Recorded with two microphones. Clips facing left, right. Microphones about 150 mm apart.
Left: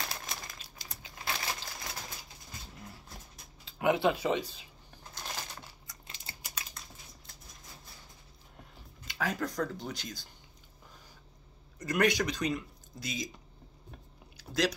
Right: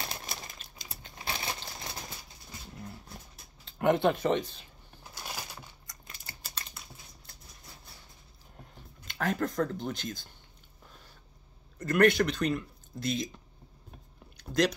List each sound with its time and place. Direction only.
0.0 s crumpling: 30° right (ahead or behind)
1.1 s a sound: 25° right (ahead or behind)
3.6 s a sound: 5° left (ahead or behind)
4.2 s speech: 10° left (ahead or behind)
5.1 s crumpling: 10° right (ahead or behind)
6.4 s typing: 10° left (ahead or behind)
9.0 s speech: 55° right (ahead or behind)
12.0 s speech: 55° right (ahead or behind)
14.3 s a sound: 5° left (ahead or behind)